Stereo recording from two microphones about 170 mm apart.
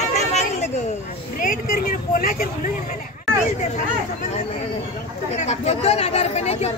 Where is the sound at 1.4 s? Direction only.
55° left (ahead or behind).